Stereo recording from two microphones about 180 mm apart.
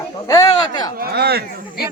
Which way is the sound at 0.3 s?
20° left (ahead or behind).